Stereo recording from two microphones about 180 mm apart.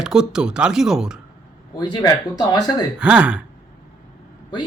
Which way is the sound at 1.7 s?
20° left (ahead or behind).